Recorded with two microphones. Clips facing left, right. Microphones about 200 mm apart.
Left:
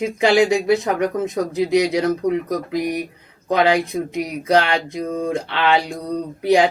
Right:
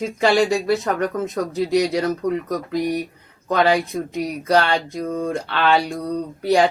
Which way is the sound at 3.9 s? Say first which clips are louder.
Left 1 dB; 15° left (ahead or behind).